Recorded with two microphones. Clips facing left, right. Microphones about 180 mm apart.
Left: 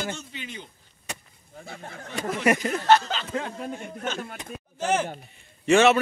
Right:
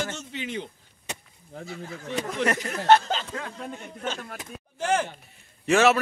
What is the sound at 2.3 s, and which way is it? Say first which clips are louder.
Speech: left 4 dB; 10° left (ahead or behind).